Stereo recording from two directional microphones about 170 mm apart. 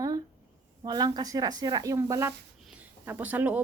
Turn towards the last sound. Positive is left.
turn(degrees=-10)  # may be behind; listen again after turning